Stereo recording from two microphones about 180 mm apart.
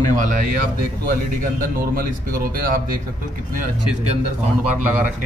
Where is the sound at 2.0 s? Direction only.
55° right (ahead or behind).